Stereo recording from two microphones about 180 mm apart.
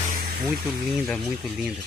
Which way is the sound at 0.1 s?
55° right (ahead or behind).